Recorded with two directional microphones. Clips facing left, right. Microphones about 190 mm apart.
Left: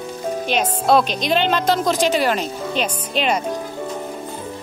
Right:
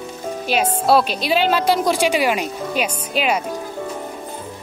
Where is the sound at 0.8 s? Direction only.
5° right (ahead or behind).